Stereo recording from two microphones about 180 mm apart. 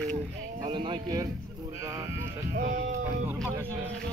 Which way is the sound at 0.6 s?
25° right (ahead or behind).